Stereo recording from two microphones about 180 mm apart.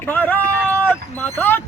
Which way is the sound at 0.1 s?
10° left (ahead or behind).